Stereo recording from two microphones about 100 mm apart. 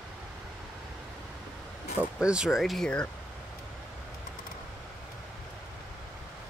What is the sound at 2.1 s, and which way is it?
Speech, 10° right (ahead or behind).